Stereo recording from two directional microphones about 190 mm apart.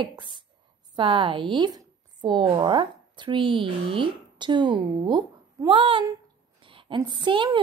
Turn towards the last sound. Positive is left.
turn(degrees=-25)  # may be behind; listen again after turning